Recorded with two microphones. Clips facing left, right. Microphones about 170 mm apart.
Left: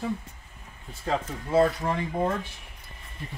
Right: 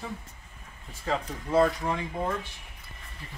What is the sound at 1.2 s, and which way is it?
Speech, 25° left (ahead or behind).